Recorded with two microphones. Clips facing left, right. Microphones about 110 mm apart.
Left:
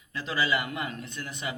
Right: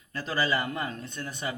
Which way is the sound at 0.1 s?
40° right (ahead or behind).